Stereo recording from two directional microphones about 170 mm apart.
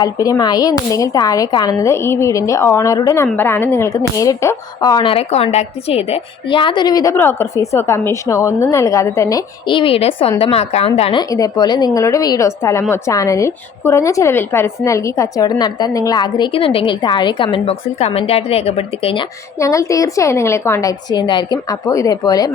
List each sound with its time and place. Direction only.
0.0 s a woman's voice: 20° left (ahead or behind)
11.2 s a woman's voice: 20° left (ahead or behind)
19.5 s a woman's voice: 20° left (ahead or behind)